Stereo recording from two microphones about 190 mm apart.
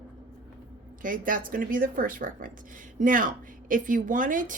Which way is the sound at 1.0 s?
45° right (ahead or behind).